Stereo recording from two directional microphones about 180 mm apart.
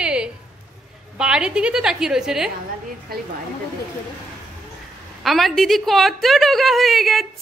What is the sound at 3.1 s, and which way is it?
Speech, 55° right (ahead or behind).